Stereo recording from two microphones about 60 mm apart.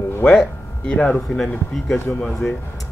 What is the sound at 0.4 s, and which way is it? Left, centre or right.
Speech, centre.